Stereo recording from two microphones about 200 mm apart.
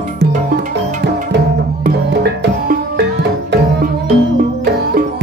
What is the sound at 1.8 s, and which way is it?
Music, 50° right (ahead or behind).